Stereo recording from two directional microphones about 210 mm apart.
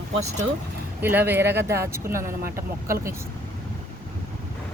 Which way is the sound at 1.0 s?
10° right (ahead or behind).